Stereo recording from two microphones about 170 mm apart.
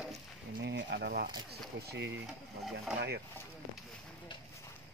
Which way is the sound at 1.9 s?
90° right.